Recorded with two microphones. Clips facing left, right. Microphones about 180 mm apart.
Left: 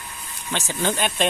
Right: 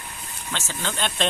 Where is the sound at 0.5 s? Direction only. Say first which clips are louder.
Left 6 dB; 15° left (ahead or behind).